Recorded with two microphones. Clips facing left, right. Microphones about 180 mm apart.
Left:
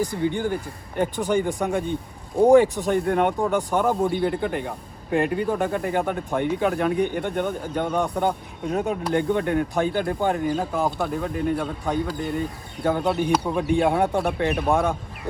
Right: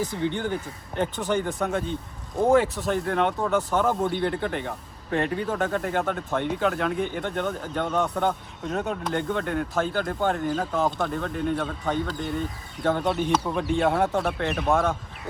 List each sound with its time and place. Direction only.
0.0 s speech: 10° left (ahead or behind)